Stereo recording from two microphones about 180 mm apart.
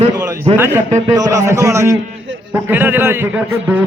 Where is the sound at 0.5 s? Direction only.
10° right (ahead or behind).